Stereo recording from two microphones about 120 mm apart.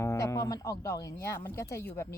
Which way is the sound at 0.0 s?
25° left (ahead or behind).